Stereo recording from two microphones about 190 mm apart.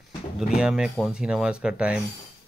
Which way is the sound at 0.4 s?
5° right (ahead or behind).